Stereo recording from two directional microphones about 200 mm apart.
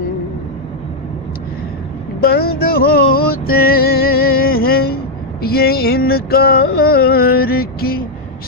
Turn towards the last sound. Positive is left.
turn(degrees=50)  # may be behind; listen again after turning